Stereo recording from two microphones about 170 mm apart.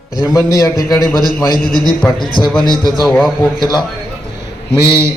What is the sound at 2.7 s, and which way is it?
Speech, centre (ahead or behind).